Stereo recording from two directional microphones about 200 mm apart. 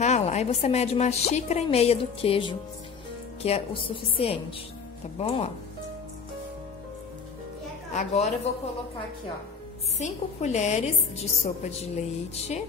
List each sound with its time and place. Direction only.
0.0 s a woman's voice: 35° left (ahead or behind)
7.9 s a woman's voice: 35° left (ahead or behind)
9.9 s a woman's voice: 35° left (ahead or behind)